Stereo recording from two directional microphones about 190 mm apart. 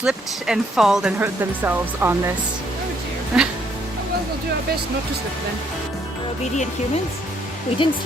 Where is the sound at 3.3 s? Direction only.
5° right (ahead or behind).